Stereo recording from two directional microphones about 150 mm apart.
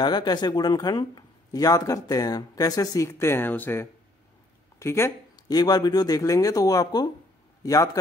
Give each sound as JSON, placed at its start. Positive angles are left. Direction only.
{"t": 0.0, "sound": "speech", "side_deg": 30}